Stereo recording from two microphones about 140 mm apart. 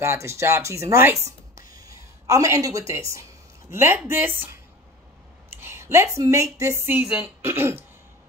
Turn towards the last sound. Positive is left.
turn(degrees=-15)  # may be behind; listen again after turning